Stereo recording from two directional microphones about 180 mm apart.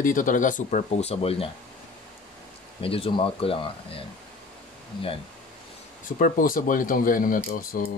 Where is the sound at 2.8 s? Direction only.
30° left (ahead or behind).